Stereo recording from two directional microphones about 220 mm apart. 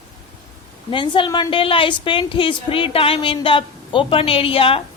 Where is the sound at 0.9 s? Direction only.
20° left (ahead or behind).